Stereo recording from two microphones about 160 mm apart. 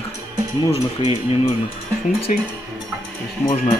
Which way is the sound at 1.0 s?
35° left (ahead or behind).